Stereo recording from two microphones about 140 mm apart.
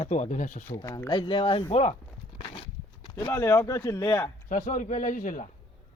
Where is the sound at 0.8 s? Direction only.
25° left (ahead or behind).